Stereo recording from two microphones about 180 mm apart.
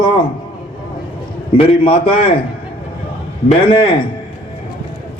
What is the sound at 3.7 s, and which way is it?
Speech, 30° left (ahead or behind).